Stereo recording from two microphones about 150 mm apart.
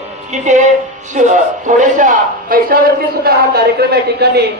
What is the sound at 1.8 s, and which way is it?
A man's voice, 60° right (ahead or behind).